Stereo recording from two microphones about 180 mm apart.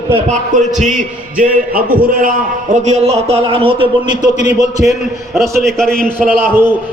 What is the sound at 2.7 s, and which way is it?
A man's voice, 40° right (ahead or behind).